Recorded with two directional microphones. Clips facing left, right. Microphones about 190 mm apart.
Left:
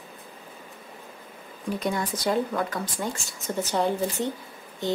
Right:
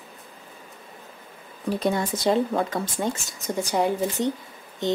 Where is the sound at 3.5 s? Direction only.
10° right (ahead or behind).